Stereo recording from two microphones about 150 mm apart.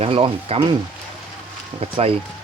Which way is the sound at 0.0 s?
40° right (ahead or behind).